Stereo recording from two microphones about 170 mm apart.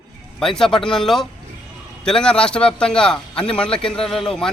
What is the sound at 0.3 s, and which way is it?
A man's voice, 5° left (ahead or behind).